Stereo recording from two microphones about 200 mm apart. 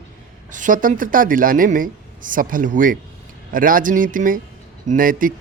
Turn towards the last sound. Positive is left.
turn(degrees=-45)  # may be behind; listen again after turning